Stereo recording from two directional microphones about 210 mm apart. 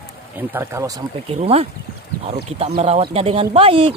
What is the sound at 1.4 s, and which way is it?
Speech, 30° right (ahead or behind).